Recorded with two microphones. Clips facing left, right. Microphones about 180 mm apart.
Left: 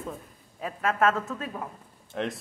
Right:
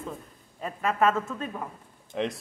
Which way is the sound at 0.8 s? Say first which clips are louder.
Even; centre (ahead or behind).